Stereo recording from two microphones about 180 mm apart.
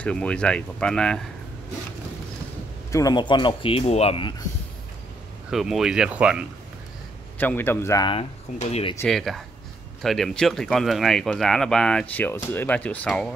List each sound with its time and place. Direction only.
0.0 s speech: 5° left (ahead or behind)
2.9 s speech: 20° left (ahead or behind)
5.5 s speech: centre (ahead or behind)
7.3 s a man's voice: 10° left (ahead or behind)
8.1 s speech: 35° left (ahead or behind)
9.0 s speech: centre (ahead or behind)